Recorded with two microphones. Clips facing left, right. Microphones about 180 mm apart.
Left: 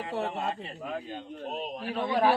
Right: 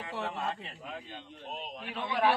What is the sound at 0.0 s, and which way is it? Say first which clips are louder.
A man's voice: left 4 dB; 35° left (ahead or behind).